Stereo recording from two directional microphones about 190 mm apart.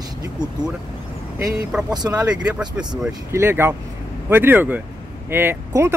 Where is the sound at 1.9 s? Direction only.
20° right (ahead or behind).